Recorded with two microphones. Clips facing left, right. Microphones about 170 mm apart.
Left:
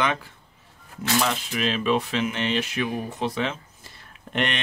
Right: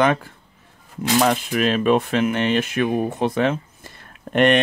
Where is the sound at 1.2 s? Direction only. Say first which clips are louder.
Right 8 dB; 50° right (ahead or behind).